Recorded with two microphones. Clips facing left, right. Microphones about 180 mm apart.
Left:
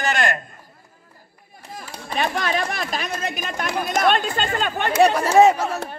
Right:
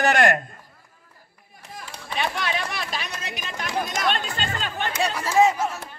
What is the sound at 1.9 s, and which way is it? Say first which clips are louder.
Speech: left 4 dB; 40° left (ahead or behind).